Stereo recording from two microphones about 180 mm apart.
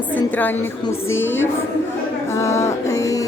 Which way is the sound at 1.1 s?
90° left.